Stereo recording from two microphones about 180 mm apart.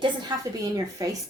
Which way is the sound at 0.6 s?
20° right (ahead or behind).